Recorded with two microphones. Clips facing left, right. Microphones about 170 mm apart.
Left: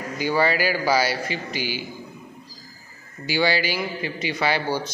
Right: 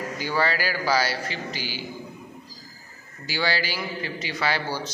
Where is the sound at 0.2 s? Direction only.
15° left (ahead or behind).